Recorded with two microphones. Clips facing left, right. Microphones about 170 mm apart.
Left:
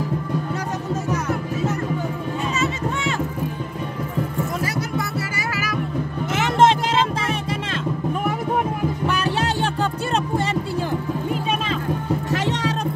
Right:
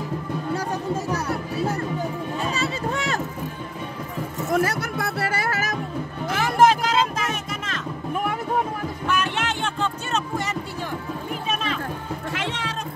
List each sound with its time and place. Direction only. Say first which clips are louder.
1.1 s music: left 2 dB; 35° right (ahead or behind)
2.5 s a sound: left 2 dB; 35° right (ahead or behind)
4.6 s music: right 1 dB; 60° right (ahead or behind)
6.3 s music: left 1 dB; 25° left (ahead or behind)
9.0 s music: even; 35° left (ahead or behind)
12.3 s music: left 5 dB; 40° left (ahead or behind)